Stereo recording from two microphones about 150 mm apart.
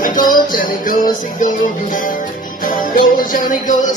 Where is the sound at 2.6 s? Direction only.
65° left (ahead or behind).